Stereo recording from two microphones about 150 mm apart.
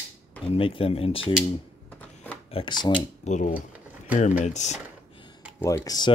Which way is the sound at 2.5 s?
35° left (ahead or behind).